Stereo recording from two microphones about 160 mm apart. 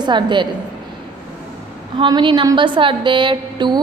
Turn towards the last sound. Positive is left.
turn(degrees=-30)  # may be behind; listen again after turning